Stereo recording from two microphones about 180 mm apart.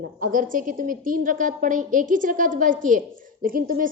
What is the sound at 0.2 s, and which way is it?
A woman's voice, 45° right (ahead or behind).